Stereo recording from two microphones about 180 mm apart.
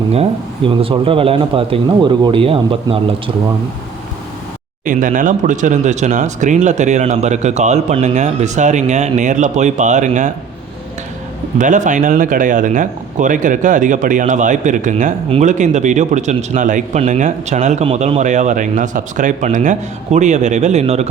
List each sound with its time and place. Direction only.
0.1 s speech: 30° right (ahead or behind)
4.9 s speech: 50° right (ahead or behind)
11.5 s speech: 45° right (ahead or behind)